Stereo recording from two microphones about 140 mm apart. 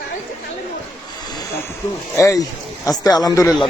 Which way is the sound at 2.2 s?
20° left (ahead or behind).